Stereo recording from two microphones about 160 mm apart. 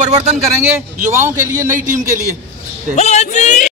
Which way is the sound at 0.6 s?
15° right (ahead or behind).